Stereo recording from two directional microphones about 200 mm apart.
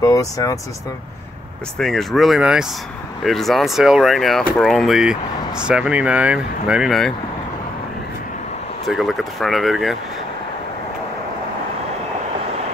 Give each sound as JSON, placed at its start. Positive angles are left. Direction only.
{"t": 0.0, "sound": "speech", "side_deg": 15}
{"t": 1.8, "sound": "speech", "side_deg": 0}
{"t": 8.8, "sound": "speech", "side_deg": 0}